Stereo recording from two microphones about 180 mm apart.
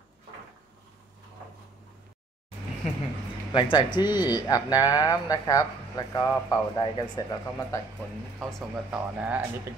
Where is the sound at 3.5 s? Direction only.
25° left (ahead or behind).